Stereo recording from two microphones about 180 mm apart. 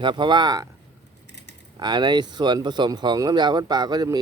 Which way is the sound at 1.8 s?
25° right (ahead or behind).